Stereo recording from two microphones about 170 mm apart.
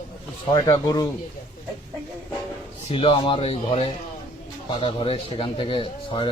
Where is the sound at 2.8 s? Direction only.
30° left (ahead or behind).